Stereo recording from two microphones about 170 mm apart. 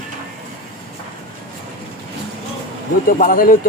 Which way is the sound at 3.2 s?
55° left (ahead or behind).